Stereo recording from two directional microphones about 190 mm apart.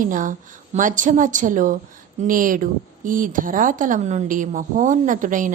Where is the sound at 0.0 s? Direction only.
45° right (ahead or behind).